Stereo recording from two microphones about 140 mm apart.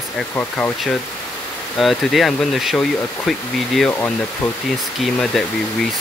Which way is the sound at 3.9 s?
15° left (ahead or behind).